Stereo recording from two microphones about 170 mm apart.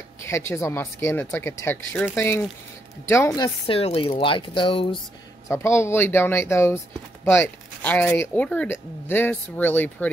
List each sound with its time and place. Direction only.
0.2 s speech: 15° left (ahead or behind)
3.6 s speech: 35° left (ahead or behind)
5.5 s speech: 15° left (ahead or behind)